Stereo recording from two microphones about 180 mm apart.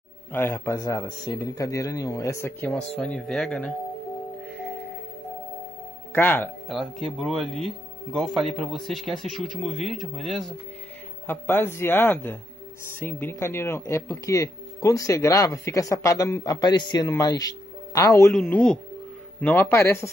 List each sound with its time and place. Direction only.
0.3 s speech: 10° left (ahead or behind)
6.1 s speech: 10° left (ahead or behind)
7.2 s speech: centre (ahead or behind)
11.2 s speech: 10° left (ahead or behind)